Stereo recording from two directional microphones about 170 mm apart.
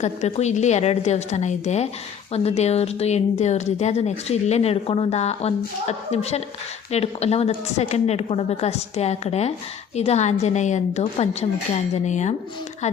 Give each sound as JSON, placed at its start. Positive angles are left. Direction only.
{"t": 0.0, "sound": "speech", "side_deg": 40}
{"t": 11.9, "sound": "dishes", "side_deg": 45}